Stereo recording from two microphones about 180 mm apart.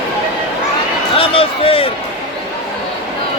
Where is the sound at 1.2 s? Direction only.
30° left (ahead or behind).